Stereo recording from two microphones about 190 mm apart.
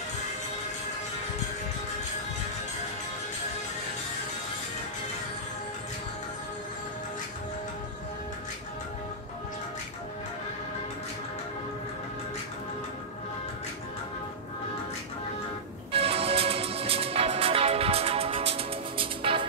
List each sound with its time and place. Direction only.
15.9 s music: 30° right (ahead or behind)